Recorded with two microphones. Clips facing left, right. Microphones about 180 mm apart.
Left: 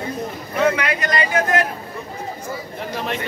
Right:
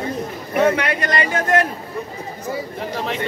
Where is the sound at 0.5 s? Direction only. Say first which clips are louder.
Right 2 dB; 30° right (ahead or behind).